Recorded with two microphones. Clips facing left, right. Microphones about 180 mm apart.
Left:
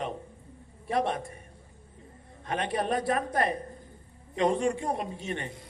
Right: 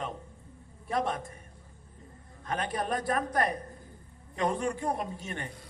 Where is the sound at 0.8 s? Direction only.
25° left (ahead or behind).